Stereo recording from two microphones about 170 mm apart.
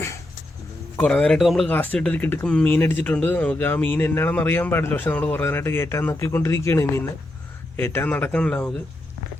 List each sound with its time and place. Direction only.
0.9 s speech: 5° left (ahead or behind)